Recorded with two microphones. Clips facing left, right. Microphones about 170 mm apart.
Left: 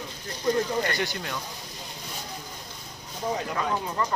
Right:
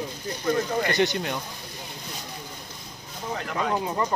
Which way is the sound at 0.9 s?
20° right (ahead or behind).